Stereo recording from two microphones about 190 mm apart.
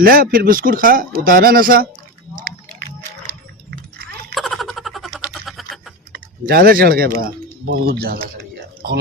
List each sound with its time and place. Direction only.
0.0 s speech: 50° right (ahead or behind)
4.4 s a sound: centre (ahead or behind)
6.1 s speech: 50° right (ahead or behind)